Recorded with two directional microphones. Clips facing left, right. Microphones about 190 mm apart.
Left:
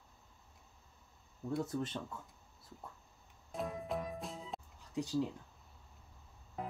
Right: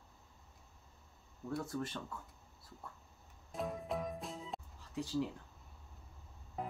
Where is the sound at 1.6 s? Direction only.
20° left (ahead or behind).